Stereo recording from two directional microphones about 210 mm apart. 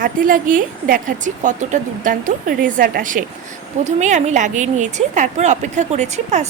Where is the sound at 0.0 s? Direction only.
40° right (ahead or behind).